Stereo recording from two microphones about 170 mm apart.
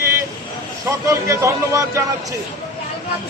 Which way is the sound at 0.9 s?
20° right (ahead or behind).